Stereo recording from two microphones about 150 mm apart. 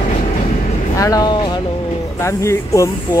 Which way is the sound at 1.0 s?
25° left (ahead or behind).